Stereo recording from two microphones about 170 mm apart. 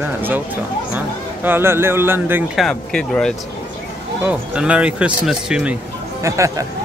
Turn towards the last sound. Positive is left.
turn(degrees=-20)  # may be behind; listen again after turning